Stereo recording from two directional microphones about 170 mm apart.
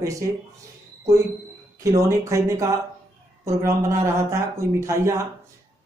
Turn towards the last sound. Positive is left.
turn(degrees=-15)  # may be behind; listen again after turning